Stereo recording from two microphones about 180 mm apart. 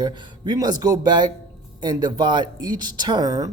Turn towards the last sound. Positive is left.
turn(degrees=-20)  # may be behind; listen again after turning